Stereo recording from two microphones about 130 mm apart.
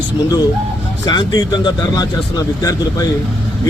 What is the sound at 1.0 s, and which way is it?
A man's voice, 30° left (ahead or behind).